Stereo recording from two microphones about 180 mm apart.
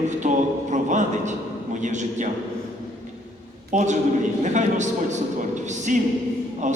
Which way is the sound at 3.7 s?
40° right (ahead or behind).